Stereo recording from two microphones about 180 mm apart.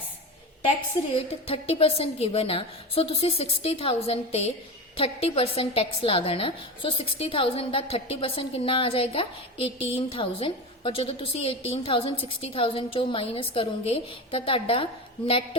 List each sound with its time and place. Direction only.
1.1 s a woman's voice: 35° left (ahead or behind)